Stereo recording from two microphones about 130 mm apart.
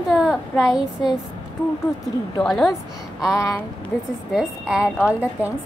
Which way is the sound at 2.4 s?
5° left (ahead or behind).